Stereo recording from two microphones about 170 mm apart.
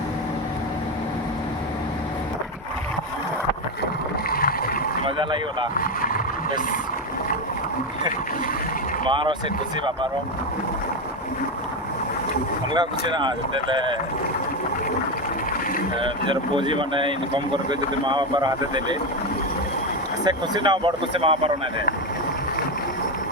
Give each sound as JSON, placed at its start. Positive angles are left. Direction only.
{"t": 4.3, "sound": "a sound", "side_deg": 60}
{"t": 5.0, "sound": "speech", "side_deg": -30}
{"t": 5.7, "sound": "vehicle", "side_deg": 55}
{"t": 9.0, "sound": "speech", "side_deg": -30}
{"t": 12.7, "sound": "speech", "side_deg": -25}
{"t": 16.0, "sound": "speech", "side_deg": -30}
{"t": 20.2, "sound": "speech", "side_deg": -25}